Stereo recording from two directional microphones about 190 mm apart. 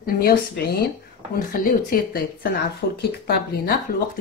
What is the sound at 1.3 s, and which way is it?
A woman's voice, 50° left (ahead or behind).